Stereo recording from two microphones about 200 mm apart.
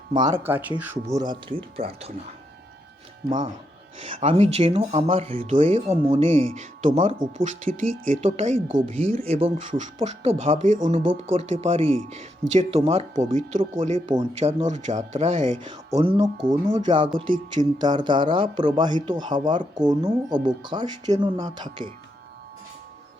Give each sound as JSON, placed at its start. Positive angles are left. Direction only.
{"t": 0.1, "sound": "speech", "side_deg": -20}
{"t": 3.2, "sound": "speech", "side_deg": -20}
{"t": 5.4, "sound": "speech", "side_deg": -40}